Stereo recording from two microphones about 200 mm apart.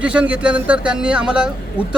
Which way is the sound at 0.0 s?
5° right (ahead or behind).